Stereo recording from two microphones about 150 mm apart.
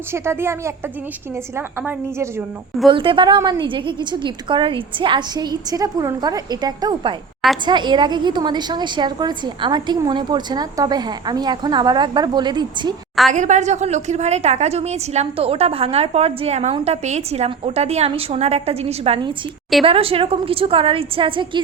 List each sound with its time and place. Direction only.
0.1 s a woman's voice: 15° right (ahead or behind)
2.9 s a woman's voice: 35° right (ahead or behind)
13.3 s a woman's voice: 55° right (ahead or behind); by 21.6 s 35° right (ahead or behind)